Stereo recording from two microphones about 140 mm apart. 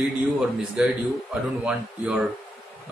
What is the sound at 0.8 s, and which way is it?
Speech, 10° right (ahead or behind).